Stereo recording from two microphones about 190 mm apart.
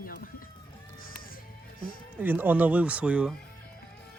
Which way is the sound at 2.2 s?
10° right (ahead or behind).